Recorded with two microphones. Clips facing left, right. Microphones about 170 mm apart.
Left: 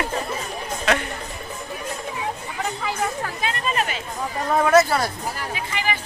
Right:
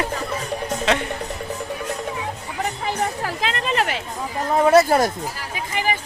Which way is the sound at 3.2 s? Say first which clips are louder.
Right 2 dB; 85° right.